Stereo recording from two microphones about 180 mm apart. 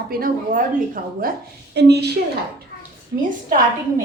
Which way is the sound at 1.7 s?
70° right (ahead or behind).